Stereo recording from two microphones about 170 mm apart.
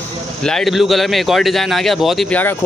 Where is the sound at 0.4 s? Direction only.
5° left (ahead or behind).